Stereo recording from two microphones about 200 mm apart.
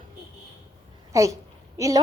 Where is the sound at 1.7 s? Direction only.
15° right (ahead or behind).